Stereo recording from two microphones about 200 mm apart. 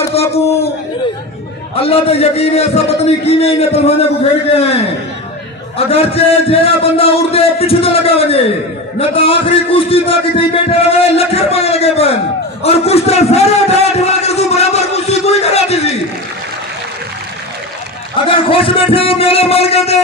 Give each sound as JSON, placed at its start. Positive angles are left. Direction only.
{"t": 0.1, "sound": "a sound", "side_deg": 30}
{"t": 1.8, "sound": "a man's voice", "side_deg": 30}
{"t": 18.2, "sound": "a man's voice", "side_deg": 25}